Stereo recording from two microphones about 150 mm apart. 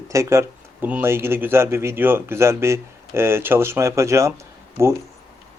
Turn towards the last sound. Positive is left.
turn(degrees=-20)  # may be behind; listen again after turning